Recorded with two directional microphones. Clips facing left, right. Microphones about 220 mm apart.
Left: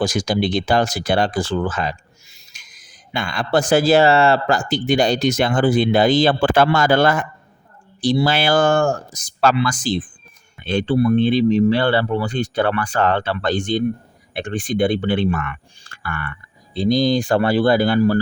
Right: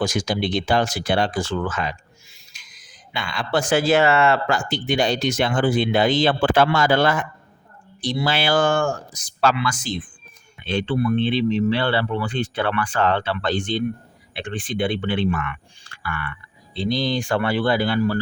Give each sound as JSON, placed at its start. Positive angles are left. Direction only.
{"t": 0.0, "sound": "speech", "side_deg": 35}